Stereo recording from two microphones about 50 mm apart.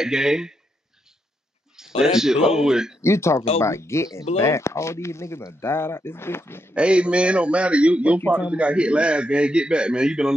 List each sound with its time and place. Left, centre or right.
0.0 s speech: centre
1.8 s speech: centre
3.0 s speech: left
6.7 s a man's voice: right